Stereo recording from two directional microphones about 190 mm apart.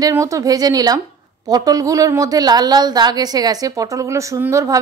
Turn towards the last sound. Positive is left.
turn(degrees=-15)  # may be behind; listen again after turning